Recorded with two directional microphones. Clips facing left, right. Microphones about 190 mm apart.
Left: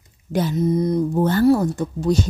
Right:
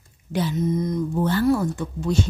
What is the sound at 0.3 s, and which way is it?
Speech, 45° left (ahead or behind).